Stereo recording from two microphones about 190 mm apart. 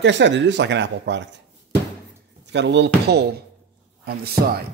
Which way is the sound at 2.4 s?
65° right (ahead or behind).